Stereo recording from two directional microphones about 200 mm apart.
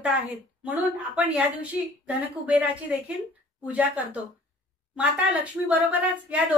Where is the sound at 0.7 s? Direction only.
10° right (ahead or behind).